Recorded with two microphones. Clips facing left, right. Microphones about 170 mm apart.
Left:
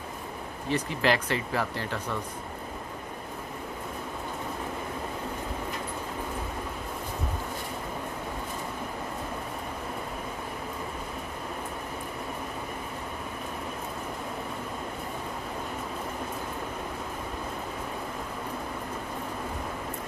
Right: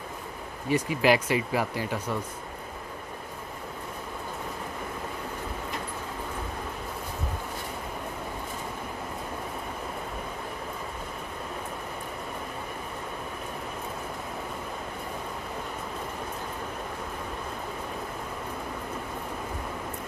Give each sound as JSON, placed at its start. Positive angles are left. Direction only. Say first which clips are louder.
{"t": 0.7, "sound": "speech", "louder": "right 3 dB", "side_deg": -10}